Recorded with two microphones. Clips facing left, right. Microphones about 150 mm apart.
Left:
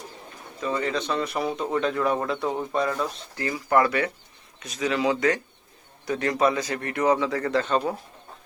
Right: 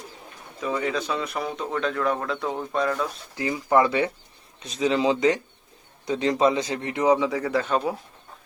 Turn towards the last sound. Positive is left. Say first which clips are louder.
# even
turn(degrees=-10)  # may be behind; listen again after turning